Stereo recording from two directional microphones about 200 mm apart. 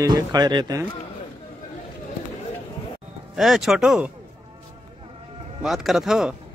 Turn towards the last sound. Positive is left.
turn(degrees=0)  # may be behind; listen again after turning